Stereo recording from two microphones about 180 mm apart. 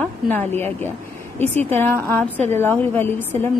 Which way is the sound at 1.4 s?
35° right (ahead or behind).